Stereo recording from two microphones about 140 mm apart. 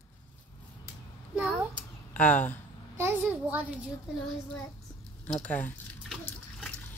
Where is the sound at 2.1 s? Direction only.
10° left (ahead or behind).